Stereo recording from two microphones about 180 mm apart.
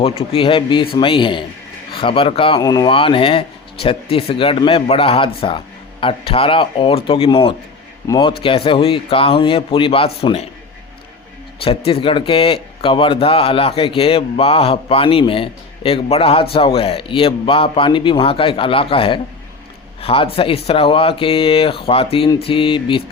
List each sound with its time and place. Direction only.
0.0 s a man's voice: 35° left (ahead or behind)
11.6 s a man's voice: 30° left (ahead or behind)